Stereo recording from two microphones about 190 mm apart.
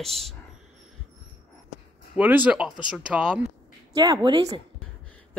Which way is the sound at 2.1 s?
10° right (ahead or behind).